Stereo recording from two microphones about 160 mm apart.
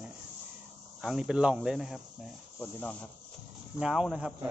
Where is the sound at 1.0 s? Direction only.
5° right (ahead or behind).